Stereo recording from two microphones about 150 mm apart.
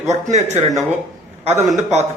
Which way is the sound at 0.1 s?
50° right (ahead or behind).